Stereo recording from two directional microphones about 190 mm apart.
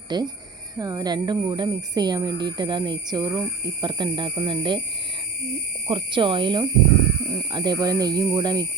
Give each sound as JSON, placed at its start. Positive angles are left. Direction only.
{"t": 0.1, "sound": "speech", "side_deg": -20}
{"t": 5.9, "sound": "speech", "side_deg": -25}